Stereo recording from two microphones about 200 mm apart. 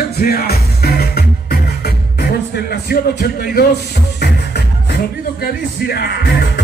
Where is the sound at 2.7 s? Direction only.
50° left (ahead or behind).